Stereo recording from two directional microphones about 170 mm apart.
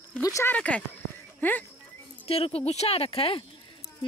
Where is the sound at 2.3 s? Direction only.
35° left (ahead or behind).